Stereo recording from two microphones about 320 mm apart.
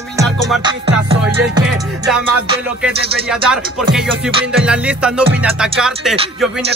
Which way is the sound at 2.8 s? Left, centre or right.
Centre.